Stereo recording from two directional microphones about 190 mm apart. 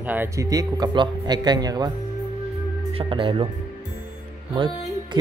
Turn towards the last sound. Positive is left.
turn(degrees=-25)  # may be behind; listen again after turning